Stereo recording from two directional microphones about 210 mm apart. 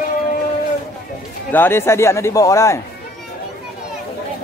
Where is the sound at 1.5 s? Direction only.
10° left (ahead or behind).